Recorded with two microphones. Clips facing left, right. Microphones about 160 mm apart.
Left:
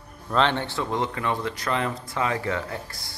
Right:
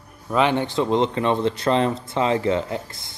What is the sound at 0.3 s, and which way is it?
Speech, 10° right (ahead or behind).